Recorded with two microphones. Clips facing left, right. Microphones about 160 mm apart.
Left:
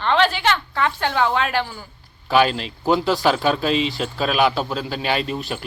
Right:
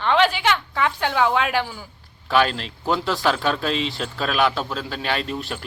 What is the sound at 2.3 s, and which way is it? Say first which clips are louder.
Speech: left 2 dB; 5° left (ahead or behind).